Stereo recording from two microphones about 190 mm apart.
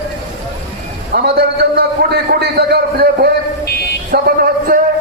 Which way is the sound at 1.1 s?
55° right (ahead or behind).